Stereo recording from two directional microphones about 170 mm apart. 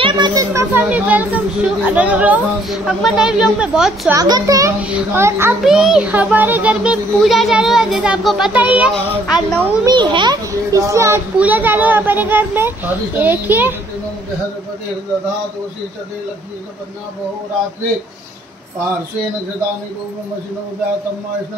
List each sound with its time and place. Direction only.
0.0 s speech: 25° right (ahead or behind); by 4.1 s 5° right (ahead or behind)
4.1 s a child's voice: 20° right (ahead or behind)
5.6 s a child's voice: centre (ahead or behind)
9.8 s a child's voice: 25° right (ahead or behind); by 13.7 s 10° right (ahead or behind)